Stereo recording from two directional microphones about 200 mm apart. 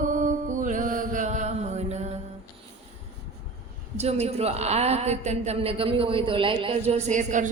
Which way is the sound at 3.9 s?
30° right (ahead or behind).